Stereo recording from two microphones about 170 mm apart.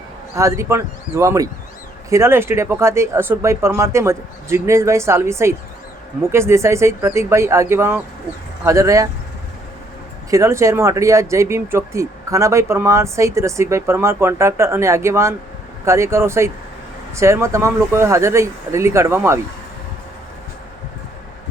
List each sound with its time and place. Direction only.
0.3 s speech: 15° right (ahead or behind)
10.2 s speech: 15° right (ahead or behind)